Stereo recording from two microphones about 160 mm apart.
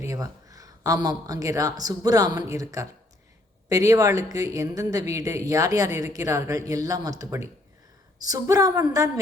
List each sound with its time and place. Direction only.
0.0 s a woman's voice: 20° right (ahead or behind)